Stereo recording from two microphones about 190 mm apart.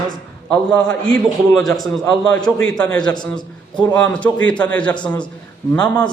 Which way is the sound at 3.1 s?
20° left (ahead or behind).